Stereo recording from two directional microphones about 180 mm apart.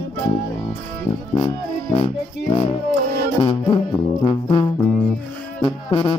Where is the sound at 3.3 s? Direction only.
30° left (ahead or behind).